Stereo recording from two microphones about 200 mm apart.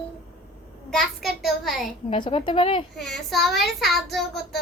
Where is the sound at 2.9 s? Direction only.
Centre (ahead or behind).